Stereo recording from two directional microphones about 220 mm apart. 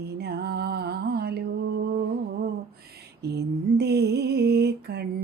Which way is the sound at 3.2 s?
50° right (ahead or behind).